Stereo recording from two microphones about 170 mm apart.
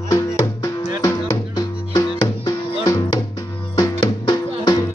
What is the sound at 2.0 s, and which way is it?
Music, 20° left (ahead or behind).